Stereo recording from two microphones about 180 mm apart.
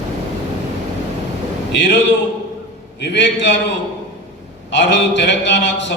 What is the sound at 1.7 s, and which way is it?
Speech, 75° left (ahead or behind).